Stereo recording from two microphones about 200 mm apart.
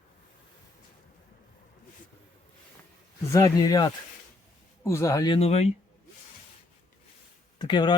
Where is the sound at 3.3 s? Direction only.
15° left (ahead or behind).